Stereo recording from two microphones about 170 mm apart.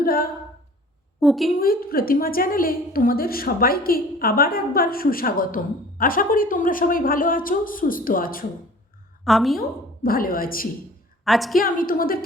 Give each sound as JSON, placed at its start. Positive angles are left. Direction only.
{"t": 0.0, "sound": "a woman's voice", "side_deg": 60}
{"t": 1.2, "sound": "a woman's voice", "side_deg": 0}
{"t": 1.5, "sound": "a woman's voice", "side_deg": 60}
{"t": 9.2, "sound": "a woman's voice", "side_deg": 0}
{"t": 9.6, "sound": "a woman's voice", "side_deg": 60}
{"t": 11.3, "sound": "a woman's voice", "side_deg": 0}
{"t": 11.5, "sound": "a woman's voice", "side_deg": 55}